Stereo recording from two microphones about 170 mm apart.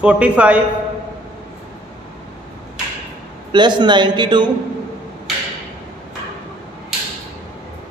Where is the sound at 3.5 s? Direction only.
25° right (ahead or behind).